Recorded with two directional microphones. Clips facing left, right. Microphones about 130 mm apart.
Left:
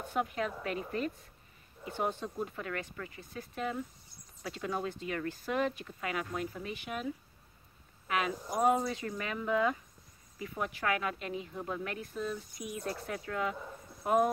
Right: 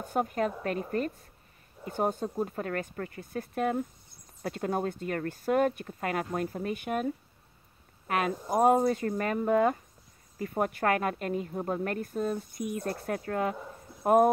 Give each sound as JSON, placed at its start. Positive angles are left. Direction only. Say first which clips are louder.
{"t": 0.0, "sound": "a woman's voice", "louder": "right 5 dB", "side_deg": -45}